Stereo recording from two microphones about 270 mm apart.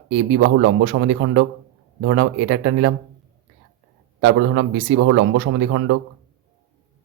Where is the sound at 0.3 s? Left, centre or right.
Right.